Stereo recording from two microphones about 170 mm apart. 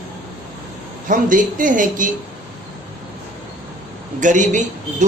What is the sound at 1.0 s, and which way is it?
A man's voice, 50° right (ahead or behind).